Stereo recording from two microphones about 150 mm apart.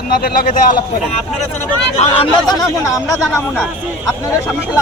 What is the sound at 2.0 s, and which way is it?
Speech, 45° left (ahead or behind).